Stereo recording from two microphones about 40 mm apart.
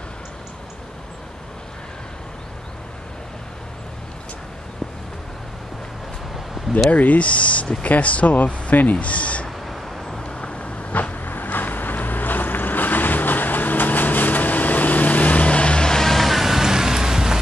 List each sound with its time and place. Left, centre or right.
6.9 s speech: left
10.1 s vehicle: left
10.6 s vehicle: left; by 17.4 s centre